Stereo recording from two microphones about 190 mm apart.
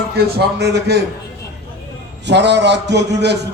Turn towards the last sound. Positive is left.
turn(degrees=-60)  # may be behind; listen again after turning